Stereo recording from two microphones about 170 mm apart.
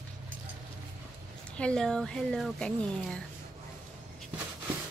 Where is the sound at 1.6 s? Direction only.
5° left (ahead or behind).